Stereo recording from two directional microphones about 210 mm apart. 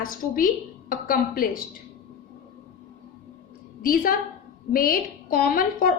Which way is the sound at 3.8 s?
45° left (ahead or behind).